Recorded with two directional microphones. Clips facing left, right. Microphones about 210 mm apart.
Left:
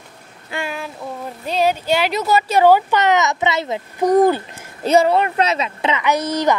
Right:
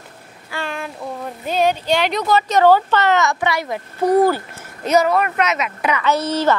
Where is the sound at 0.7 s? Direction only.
Centre (ahead or behind).